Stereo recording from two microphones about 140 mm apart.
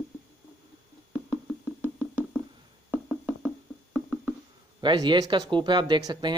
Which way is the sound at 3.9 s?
10° right (ahead or behind).